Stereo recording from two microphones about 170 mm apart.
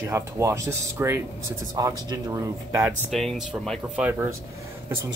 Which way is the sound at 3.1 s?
Centre (ahead or behind).